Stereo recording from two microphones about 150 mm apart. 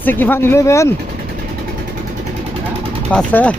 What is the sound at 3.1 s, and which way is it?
Speech, 10° left (ahead or behind).